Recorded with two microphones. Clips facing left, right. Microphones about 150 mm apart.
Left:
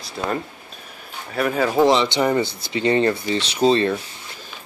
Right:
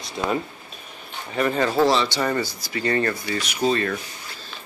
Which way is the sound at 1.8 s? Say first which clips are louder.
Left 5 dB; 20° left (ahead or behind).